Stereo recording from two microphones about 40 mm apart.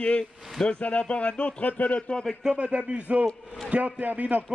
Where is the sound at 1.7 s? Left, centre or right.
Left.